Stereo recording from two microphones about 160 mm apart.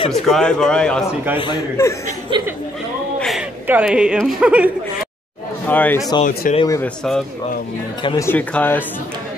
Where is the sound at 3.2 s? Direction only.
Centre (ahead or behind).